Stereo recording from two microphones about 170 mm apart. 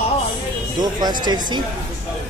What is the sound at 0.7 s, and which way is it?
Speech, 25° right (ahead or behind).